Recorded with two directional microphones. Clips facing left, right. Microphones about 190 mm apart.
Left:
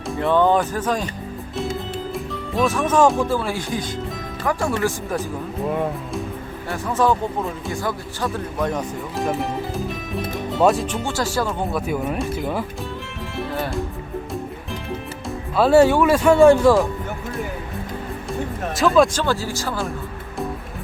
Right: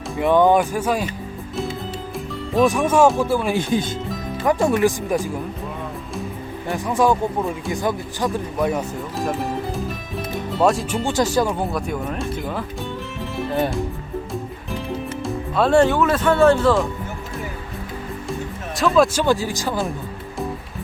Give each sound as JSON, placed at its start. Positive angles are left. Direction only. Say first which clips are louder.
{"t": 0.2, "sound": "speech", "louder": "right 2 dB", "side_deg": -15}
{"t": 2.6, "sound": "speech", "louder": "right 2 dB", "side_deg": -15}
{"t": 5.6, "sound": "speech", "louder": "left 8 dB", "side_deg": 55}
{"t": 6.7, "sound": "speech", "louder": "right 1 dB", "side_deg": -15}
{"t": 10.6, "sound": "speech", "louder": "left 1 dB", "side_deg": 0}
{"t": 10.9, "sound": "speech", "louder": "right 4 dB", "side_deg": -15}
{"t": 11.7, "sound": "speech", "louder": "left 2 dB", "side_deg": 5}
{"t": 15.5, "sound": "speech", "louder": "left 2 dB", "side_deg": 5}
{"t": 18.8, "sound": "speech", "louder": "even", "side_deg": 0}
{"t": 19.2, "sound": "speech", "louder": "right 3 dB", "side_deg": -15}